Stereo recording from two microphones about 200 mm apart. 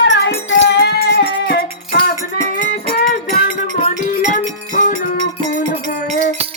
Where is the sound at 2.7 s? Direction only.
40° left (ahead or behind).